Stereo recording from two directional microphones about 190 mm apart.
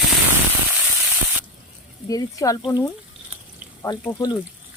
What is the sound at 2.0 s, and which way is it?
Speech, 15° left (ahead or behind).